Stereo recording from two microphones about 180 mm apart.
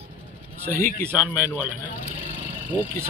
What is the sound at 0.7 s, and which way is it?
Speech, 55° left (ahead or behind).